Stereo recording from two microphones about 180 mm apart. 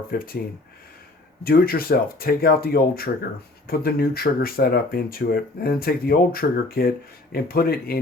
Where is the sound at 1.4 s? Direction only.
55° left (ahead or behind).